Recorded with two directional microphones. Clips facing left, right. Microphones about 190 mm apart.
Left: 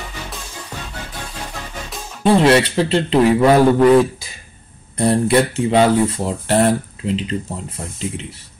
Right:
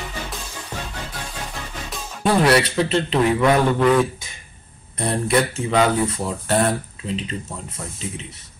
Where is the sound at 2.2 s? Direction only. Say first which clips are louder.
Left 4 dB; 25° left (ahead or behind).